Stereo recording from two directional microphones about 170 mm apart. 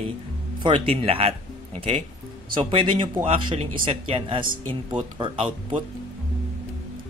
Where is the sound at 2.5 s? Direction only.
30° right (ahead or behind).